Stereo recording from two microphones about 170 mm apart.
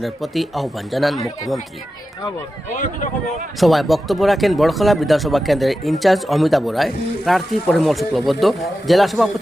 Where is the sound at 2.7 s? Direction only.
50° left (ahead or behind).